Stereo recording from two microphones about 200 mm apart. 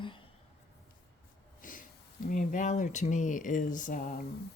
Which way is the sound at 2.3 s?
40° left (ahead or behind).